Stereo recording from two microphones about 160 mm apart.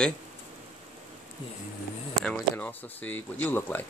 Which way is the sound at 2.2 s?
10° left (ahead or behind).